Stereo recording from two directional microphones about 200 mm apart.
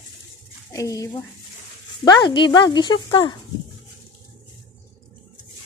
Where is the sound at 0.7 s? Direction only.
15° left (ahead or behind).